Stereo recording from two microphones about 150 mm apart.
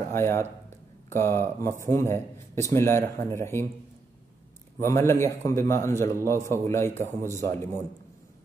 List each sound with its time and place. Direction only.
0.1 s a man's voice: 15° left (ahead or behind)
4.7 s a man's voice: 20° left (ahead or behind)